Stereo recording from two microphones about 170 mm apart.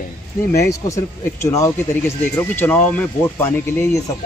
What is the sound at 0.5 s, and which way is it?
Speech, 15° left (ahead or behind).